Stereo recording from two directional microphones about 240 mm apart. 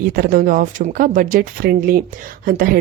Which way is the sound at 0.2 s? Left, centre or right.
Right.